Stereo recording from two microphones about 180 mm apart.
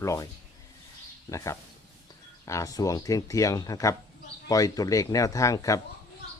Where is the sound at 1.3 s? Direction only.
15° left (ahead or behind).